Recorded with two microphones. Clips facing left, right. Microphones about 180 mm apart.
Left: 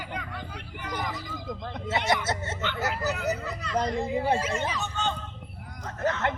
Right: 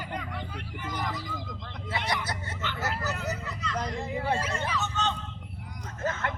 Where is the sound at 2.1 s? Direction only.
25° left (ahead or behind).